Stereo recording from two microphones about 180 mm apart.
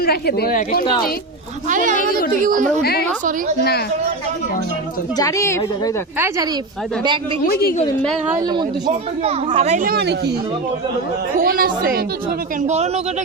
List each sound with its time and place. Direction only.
0.0 s a woman's voice: 60° left (ahead or behind)
1.7 s speech: 45° right (ahead or behind)
5.1 s a woman's voice: 15° left (ahead or behind)
6.1 s speech: 15° right (ahead or behind)
8.3 s speech: 20° right (ahead or behind)
8.9 s speech: 35° right (ahead or behind); by 10.3 s 65° right (ahead or behind)
11.3 s speech: 50° right (ahead or behind)
12.6 s speech: 40° right (ahead or behind)